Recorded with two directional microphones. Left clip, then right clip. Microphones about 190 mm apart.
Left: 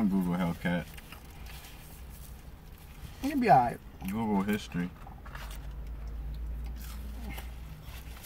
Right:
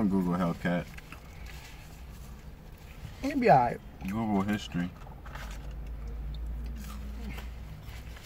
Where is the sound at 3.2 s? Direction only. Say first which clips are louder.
Right 1 dB; 15° left (ahead or behind).